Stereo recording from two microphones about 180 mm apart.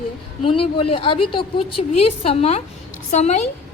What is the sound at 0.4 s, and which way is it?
A woman's voice, 30° left (ahead or behind).